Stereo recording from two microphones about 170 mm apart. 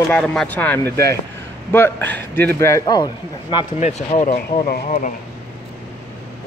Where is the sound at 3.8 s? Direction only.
40° left (ahead or behind).